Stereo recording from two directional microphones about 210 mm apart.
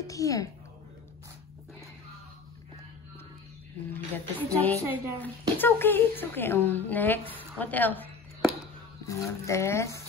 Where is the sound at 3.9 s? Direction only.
10° left (ahead or behind).